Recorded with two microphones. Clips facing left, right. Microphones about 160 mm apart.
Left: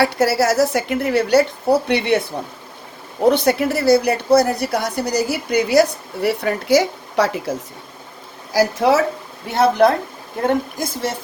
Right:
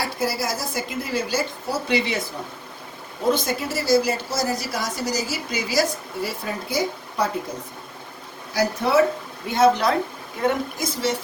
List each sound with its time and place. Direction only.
0.0 s a woman's voice: 75° left (ahead or behind)
3.2 s a woman's voice: 65° left (ahead or behind); by 7.5 s 85° left
8.5 s a woman's voice: 90° left
9.5 s a woman's voice: 65° left (ahead or behind)